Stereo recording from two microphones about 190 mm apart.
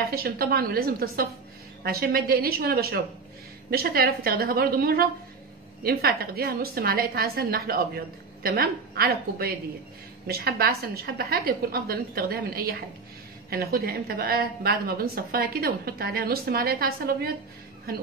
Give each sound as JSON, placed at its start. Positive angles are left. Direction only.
{"t": 0.0, "sound": "a woman's voice", "side_deg": -50}